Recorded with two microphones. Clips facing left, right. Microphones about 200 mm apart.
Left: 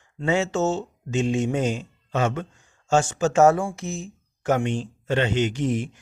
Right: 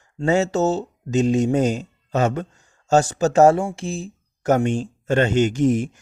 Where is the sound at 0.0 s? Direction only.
40° right (ahead or behind).